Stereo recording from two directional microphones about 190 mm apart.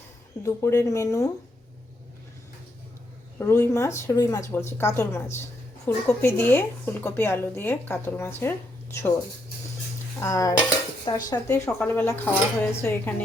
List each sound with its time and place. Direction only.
0.4 s speech: 15° left (ahead or behind)
3.3 s speech: 15° left (ahead or behind)
10.2 s speech: 15° left (ahead or behind)